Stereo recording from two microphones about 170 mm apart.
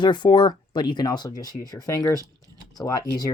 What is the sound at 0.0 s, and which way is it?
Speech, 25° left (ahead or behind).